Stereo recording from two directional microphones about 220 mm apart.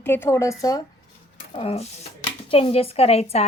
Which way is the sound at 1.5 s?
25° left (ahead or behind).